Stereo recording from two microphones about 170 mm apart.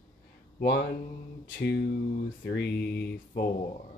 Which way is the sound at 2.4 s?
85° left.